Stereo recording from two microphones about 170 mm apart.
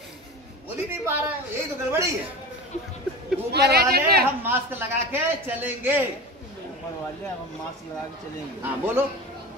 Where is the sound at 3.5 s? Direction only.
70° right (ahead or behind).